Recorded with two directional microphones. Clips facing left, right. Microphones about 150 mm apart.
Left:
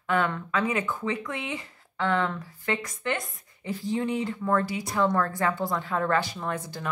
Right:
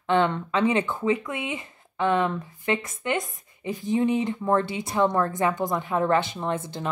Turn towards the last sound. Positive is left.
turn(degrees=-25)  # may be behind; listen again after turning